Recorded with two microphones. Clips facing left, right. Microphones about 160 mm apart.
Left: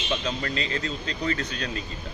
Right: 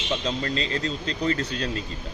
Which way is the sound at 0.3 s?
30° right (ahead or behind).